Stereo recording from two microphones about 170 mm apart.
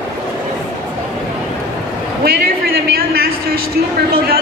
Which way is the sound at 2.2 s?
65° right (ahead or behind).